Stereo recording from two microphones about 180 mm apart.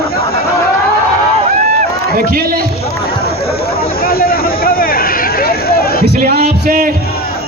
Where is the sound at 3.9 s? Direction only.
55° left (ahead or behind).